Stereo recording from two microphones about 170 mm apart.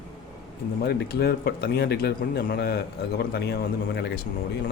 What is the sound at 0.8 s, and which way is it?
A man's voice, 65° left (ahead or behind).